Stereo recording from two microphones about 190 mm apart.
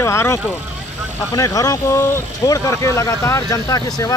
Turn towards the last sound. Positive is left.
turn(degrees=20)  # may be behind; listen again after turning